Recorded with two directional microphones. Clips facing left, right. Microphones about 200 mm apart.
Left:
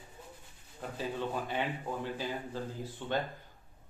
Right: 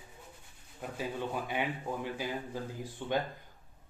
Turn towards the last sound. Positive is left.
turn(degrees=-15)  # may be behind; listen again after turning